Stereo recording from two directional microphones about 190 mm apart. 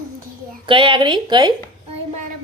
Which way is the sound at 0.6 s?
25° right (ahead or behind).